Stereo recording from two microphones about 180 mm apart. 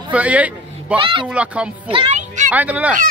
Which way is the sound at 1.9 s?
30° right (ahead or behind).